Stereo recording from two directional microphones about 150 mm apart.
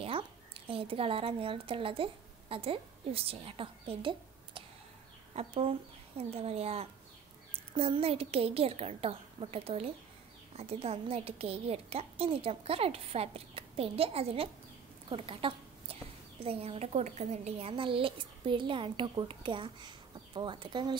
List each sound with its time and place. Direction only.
0.7 s a woman's voice: 40° right (ahead or behind)
15.0 s a sound: 35° right (ahead or behind)
16.4 s a woman's voice: 40° right (ahead or behind)